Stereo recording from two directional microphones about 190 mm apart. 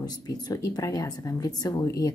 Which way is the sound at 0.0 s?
20° left (ahead or behind).